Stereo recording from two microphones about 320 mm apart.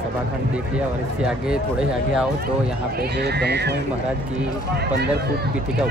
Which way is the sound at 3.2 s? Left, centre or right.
Right.